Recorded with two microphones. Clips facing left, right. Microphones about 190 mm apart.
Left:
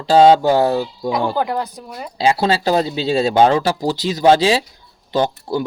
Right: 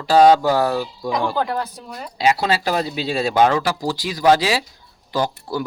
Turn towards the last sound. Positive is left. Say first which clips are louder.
# left 4 dB
turn(degrees=25)  # may be behind; listen again after turning